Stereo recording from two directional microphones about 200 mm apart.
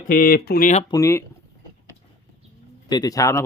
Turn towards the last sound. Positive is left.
turn(degrees=15)  # may be behind; listen again after turning